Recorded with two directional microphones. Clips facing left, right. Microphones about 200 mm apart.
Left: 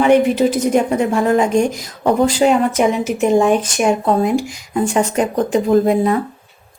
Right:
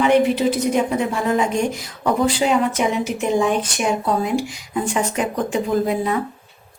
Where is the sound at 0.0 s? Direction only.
45° left (ahead or behind).